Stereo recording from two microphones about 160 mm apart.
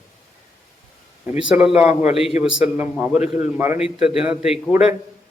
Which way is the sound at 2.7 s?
15° right (ahead or behind).